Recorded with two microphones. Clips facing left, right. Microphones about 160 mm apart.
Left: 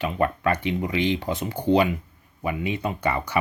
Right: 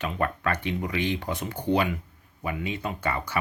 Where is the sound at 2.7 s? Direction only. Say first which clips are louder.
Left 5 dB; 15° left (ahead or behind).